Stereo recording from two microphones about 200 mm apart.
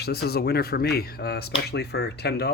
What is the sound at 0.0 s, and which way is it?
Speech, 50° left (ahead or behind).